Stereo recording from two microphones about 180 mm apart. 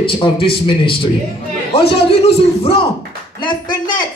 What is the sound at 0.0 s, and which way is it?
A man's voice, 30° left (ahead or behind).